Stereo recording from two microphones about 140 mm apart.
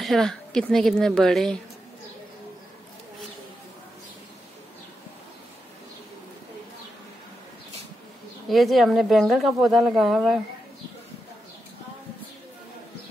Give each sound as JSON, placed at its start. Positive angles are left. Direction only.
{"t": 0.0, "sound": "speech", "side_deg": 0}
{"t": 8.5, "sound": "speech", "side_deg": 0}